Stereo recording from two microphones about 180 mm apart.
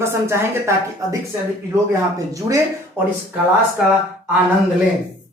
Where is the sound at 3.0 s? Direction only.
15° right (ahead or behind).